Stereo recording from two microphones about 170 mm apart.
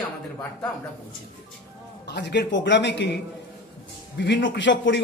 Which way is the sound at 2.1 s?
85° left.